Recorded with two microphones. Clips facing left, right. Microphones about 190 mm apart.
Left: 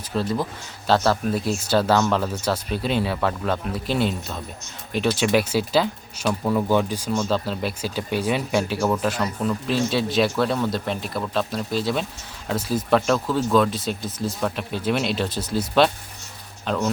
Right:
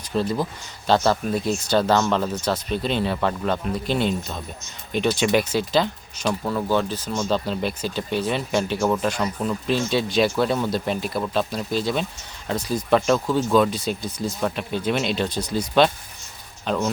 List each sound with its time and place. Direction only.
0.1 s speech: centre (ahead or behind)
7.2 s speech: centre (ahead or behind)